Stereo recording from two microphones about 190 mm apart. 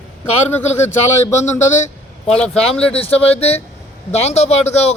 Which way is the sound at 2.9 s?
30° left (ahead or behind).